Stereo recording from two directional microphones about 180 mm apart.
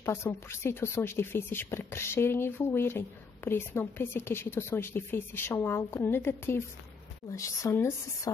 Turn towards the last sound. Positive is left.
turn(degrees=15)  # may be behind; listen again after turning